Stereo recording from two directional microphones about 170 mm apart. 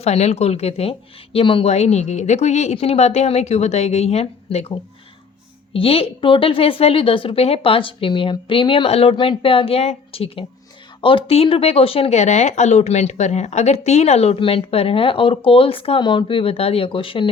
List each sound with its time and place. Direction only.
0.0 s speech: 40° left (ahead or behind)
5.7 s speech: 35° left (ahead or behind)